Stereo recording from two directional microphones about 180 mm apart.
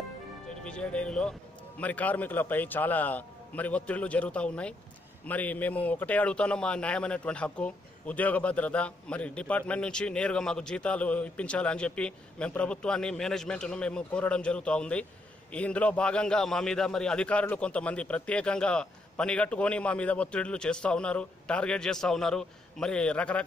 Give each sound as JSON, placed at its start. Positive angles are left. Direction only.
{"t": 0.7, "sound": "a man's voice", "side_deg": 5}